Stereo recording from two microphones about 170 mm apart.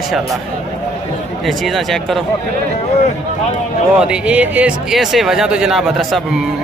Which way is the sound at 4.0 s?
5° right (ahead or behind).